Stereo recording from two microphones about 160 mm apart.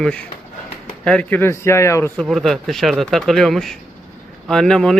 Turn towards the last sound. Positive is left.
turn(degrees=5)  # may be behind; listen again after turning